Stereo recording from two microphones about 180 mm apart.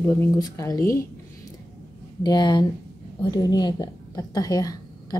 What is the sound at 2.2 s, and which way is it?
A woman's voice, 25° left (ahead or behind).